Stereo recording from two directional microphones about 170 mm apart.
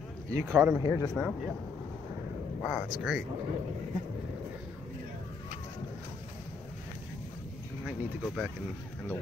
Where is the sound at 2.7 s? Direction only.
5° right (ahead or behind).